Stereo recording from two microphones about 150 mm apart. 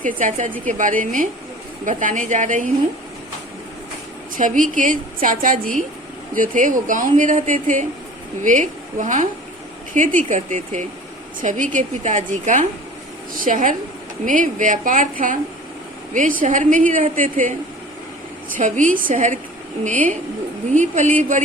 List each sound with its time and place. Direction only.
0.0 s speech: 60° right (ahead or behind)
4.4 s a woman's voice: 60° right (ahead or behind)
16.4 s speech: 60° right (ahead or behind)
18.5 s speech: 60° right (ahead or behind)